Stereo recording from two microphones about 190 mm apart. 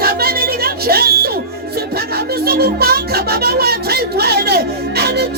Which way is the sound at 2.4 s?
55° right (ahead or behind).